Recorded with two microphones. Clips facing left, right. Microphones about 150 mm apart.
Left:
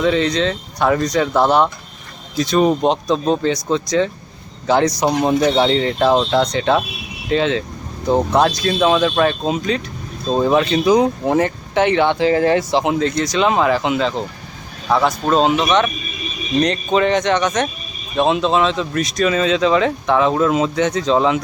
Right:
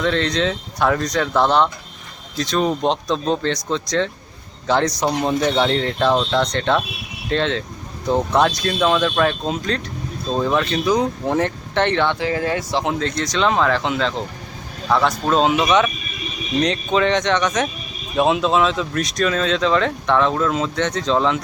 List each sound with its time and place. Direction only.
0.0 s speech: 5° left (ahead or behind)
10.2 s speech: 20° left (ahead or behind)
12.0 s speech: 30° left (ahead or behind)
12.8 s speech: 5° left (ahead or behind)